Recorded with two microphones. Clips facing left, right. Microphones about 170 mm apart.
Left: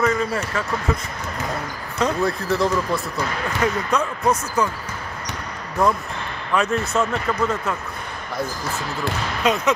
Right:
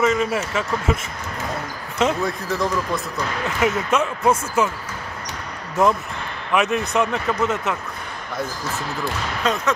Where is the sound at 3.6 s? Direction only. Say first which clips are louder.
Right 2 dB; 25° right (ahead or behind).